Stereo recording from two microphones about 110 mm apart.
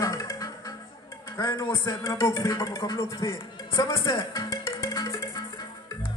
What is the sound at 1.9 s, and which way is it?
Music, 25° left (ahead or behind).